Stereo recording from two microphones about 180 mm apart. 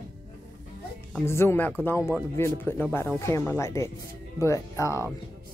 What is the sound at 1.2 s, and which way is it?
Speech, 15° left (ahead or behind).